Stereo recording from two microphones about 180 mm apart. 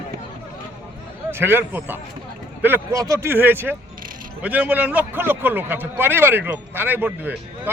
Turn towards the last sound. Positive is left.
turn(degrees=-10)  # may be behind; listen again after turning